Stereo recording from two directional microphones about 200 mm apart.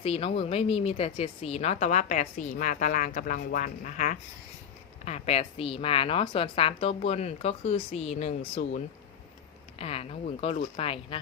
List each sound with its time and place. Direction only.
0.0 s speech: 30° left (ahead or behind)